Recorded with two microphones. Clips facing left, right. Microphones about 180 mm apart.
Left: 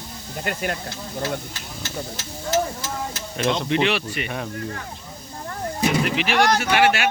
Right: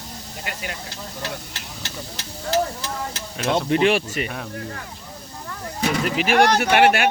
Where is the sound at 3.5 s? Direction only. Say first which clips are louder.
Right 3 dB; 45° right (ahead or behind).